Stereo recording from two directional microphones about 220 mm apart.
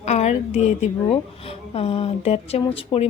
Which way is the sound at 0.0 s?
30° left (ahead or behind).